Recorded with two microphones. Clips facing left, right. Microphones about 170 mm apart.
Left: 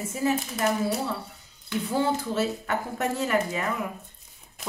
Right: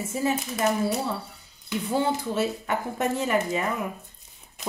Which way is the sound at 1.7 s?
15° right (ahead or behind).